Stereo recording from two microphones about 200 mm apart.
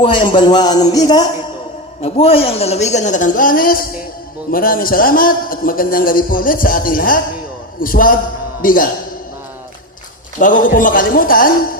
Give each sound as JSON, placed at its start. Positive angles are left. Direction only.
{"t": 0.0, "sound": "a man's voice", "side_deg": 25}
{"t": 10.4, "sound": "a man's voice", "side_deg": 40}